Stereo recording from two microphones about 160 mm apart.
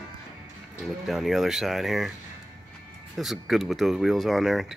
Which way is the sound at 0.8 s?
Centre (ahead or behind).